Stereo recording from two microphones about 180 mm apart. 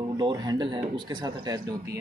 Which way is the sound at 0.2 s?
25° right (ahead or behind).